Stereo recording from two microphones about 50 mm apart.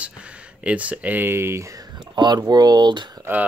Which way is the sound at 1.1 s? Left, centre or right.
Right.